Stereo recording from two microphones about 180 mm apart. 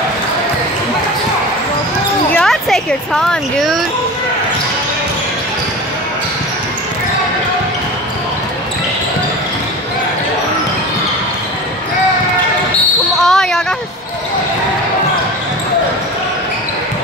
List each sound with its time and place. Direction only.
2.3 s a woman's voice: centre (ahead or behind)
13.2 s speech: centre (ahead or behind)